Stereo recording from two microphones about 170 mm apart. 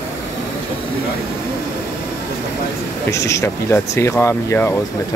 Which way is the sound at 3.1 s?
15° left (ahead or behind).